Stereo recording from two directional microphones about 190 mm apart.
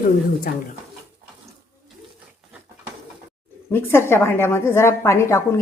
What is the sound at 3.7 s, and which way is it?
A woman's voice, 10° left (ahead or behind).